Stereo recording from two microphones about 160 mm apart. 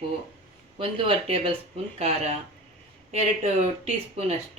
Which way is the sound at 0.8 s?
35° right (ahead or behind).